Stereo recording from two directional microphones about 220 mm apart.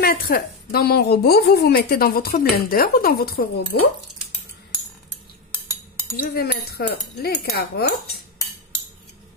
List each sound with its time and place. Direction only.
0.0 s a woman's voice: 40° left (ahead or behind)
6.1 s a woman's voice: 45° left (ahead or behind)